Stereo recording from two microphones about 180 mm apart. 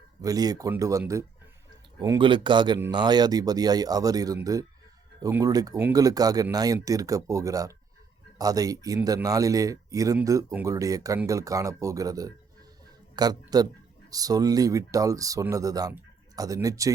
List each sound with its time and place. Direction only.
0.2 s speech: 20° right (ahead or behind)